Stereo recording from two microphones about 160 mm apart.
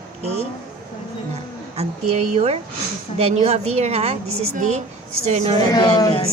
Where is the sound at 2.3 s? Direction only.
40° right (ahead or behind).